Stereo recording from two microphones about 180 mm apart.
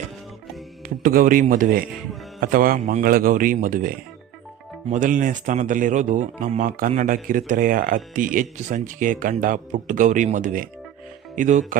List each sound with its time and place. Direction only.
1.0 s speech: 50° right (ahead or behind)